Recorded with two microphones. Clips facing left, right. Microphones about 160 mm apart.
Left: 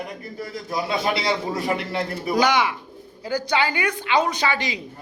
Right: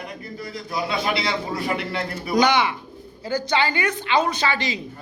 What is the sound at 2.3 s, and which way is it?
A woman's voice, 10° left (ahead or behind).